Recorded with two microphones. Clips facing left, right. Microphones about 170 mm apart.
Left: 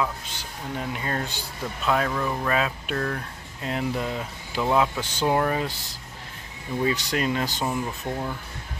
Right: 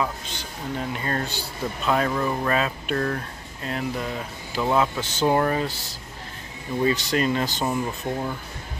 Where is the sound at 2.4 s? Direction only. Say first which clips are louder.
Right 1 dB; 5° left (ahead or behind).